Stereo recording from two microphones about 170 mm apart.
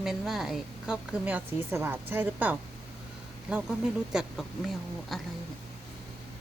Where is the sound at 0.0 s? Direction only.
Centre (ahead or behind).